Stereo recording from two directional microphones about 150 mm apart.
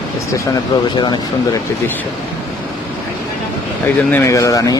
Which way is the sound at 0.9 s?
30° left (ahead or behind).